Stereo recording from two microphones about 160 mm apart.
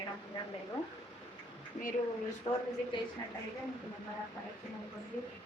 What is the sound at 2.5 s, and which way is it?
Speech, 35° left (ahead or behind).